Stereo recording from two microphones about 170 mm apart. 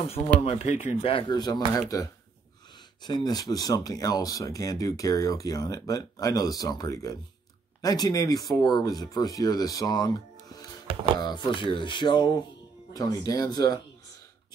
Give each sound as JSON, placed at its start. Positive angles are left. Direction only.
{"t": 0.0, "sound": "speech", "side_deg": 35}
{"t": 3.0, "sound": "speech", "side_deg": 25}